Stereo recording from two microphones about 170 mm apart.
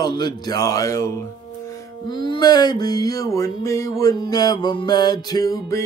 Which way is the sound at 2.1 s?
25° left (ahead or behind).